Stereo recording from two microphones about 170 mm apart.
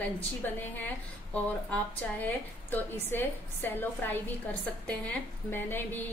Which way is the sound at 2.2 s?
10° left (ahead or behind).